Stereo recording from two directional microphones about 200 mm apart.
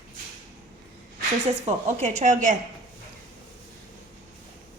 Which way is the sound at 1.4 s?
35° right (ahead or behind).